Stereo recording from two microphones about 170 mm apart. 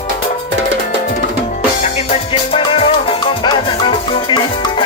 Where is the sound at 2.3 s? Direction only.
35° left (ahead or behind).